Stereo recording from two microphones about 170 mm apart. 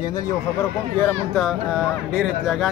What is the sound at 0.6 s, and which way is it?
Speech, 10° left (ahead or behind).